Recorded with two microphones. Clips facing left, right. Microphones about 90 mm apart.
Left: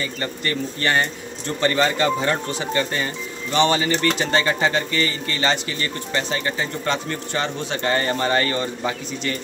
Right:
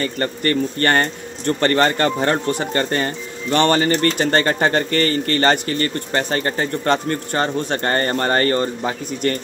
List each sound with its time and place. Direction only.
0.0 s speech: 50° right (ahead or behind)